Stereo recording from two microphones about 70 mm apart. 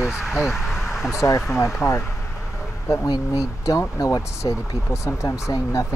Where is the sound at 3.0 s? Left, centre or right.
Left.